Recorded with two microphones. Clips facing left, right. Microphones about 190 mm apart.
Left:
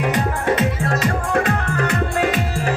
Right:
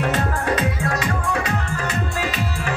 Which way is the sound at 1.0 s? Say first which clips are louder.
Left 4 dB; 50° left (ahead or behind).